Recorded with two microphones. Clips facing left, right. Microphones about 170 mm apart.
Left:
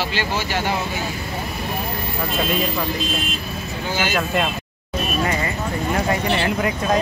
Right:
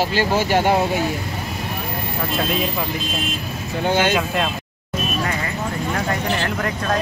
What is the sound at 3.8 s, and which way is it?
Speech, 60° right (ahead or behind).